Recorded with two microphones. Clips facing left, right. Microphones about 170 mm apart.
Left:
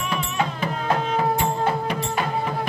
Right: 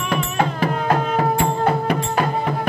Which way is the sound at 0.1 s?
50° right (ahead or behind).